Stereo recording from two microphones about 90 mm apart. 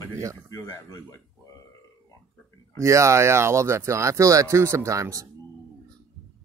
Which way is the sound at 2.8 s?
35° right (ahead or behind).